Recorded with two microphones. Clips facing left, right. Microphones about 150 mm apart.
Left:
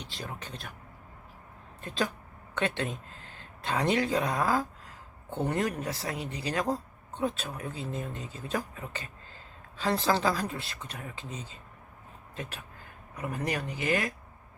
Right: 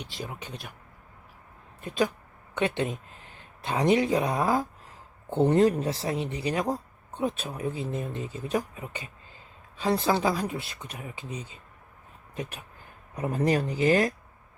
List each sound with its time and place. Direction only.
0.0 s speech: 15° right (ahead or behind)
1.8 s speech: 15° right (ahead or behind)
13.1 s speech: 30° right (ahead or behind)